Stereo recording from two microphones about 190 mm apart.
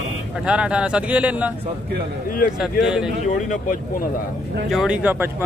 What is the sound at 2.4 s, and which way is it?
Speech, 45° left (ahead or behind).